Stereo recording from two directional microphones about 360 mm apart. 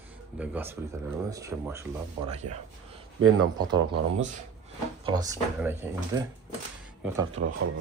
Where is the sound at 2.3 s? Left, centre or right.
Centre.